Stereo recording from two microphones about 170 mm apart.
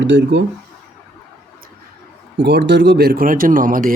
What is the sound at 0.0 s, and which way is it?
Speech, 90° right.